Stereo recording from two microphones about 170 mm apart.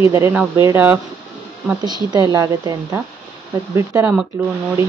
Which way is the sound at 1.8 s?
25° right (ahead or behind).